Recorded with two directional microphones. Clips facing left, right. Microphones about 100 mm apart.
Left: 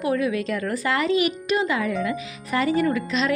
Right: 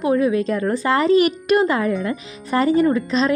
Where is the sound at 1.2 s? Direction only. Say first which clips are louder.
Right 6 dB; 50° right (ahead or behind).